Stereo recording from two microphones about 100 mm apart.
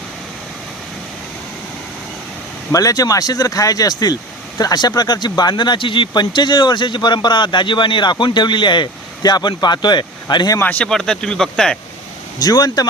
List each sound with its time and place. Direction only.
2.7 s speech: 35° left (ahead or behind)
10.6 s speech: 15° left (ahead or behind)
10.8 s speech: 5° left (ahead or behind)
12.4 s speech: 40° left (ahead or behind)